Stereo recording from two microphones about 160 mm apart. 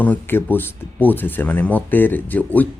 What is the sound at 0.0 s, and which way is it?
Speech, 10° left (ahead or behind).